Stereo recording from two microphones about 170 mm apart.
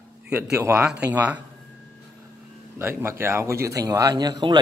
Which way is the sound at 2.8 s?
15° right (ahead or behind).